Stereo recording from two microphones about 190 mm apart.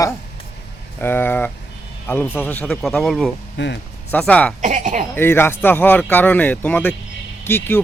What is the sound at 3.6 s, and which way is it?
Speech, 70° left (ahead or behind).